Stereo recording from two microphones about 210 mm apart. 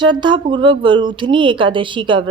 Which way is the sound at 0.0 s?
20° right (ahead or behind).